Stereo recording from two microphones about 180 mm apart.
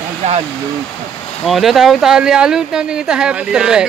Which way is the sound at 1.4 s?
Centre (ahead or behind).